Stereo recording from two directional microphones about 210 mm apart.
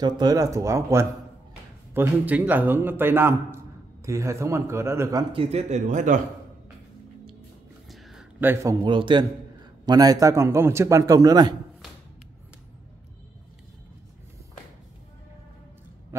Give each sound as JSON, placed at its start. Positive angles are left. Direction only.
{"t": 0.0, "sound": "a man's voice", "side_deg": -20}
{"t": 5.3, "sound": "a man's voice", "side_deg": -30}
{"t": 7.9, "sound": "a sound", "side_deg": 0}
{"t": 8.8, "sound": "a man's voice", "side_deg": -25}